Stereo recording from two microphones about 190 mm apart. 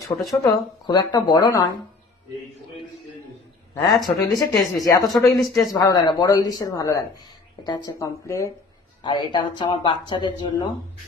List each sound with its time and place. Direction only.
0.1 s speech: 20° left (ahead or behind)
3.8 s speech: 20° left (ahead or behind)